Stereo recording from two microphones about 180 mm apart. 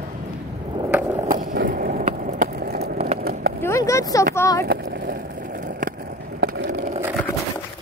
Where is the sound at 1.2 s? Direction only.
50° right (ahead or behind).